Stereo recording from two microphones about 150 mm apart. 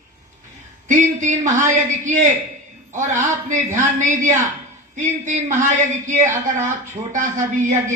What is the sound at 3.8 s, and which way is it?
Speech, 55° right (ahead or behind).